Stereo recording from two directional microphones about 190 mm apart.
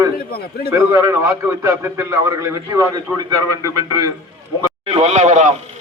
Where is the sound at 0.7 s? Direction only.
15° right (ahead or behind).